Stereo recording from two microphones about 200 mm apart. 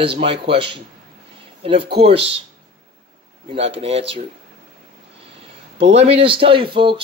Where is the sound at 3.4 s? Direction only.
30° right (ahead or behind).